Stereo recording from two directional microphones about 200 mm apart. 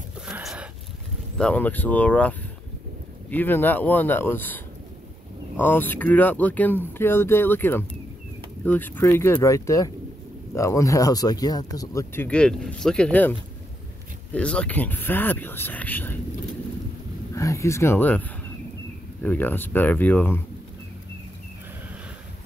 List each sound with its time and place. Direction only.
0.3 s a sound: 5° right (ahead or behind)
1.4 s speech: 10° left (ahead or behind)
5.6 s speech: 10° left (ahead or behind)
17.4 s speech: 15° left (ahead or behind)
19.2 s speech: 10° left (ahead or behind)